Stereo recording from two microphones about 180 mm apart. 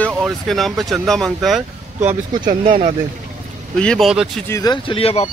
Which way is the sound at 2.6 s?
25° right (ahead or behind).